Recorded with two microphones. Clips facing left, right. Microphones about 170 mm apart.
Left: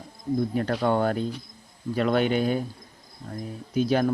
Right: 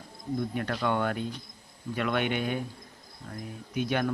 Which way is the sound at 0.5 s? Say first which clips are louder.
Left 5 dB; 35° left (ahead or behind).